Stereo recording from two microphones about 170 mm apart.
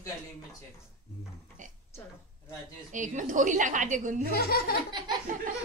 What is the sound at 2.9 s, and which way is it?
A woman's voice, 50° right (ahead or behind).